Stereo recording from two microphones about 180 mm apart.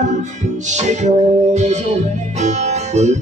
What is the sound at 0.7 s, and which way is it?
Music, 40° right (ahead or behind).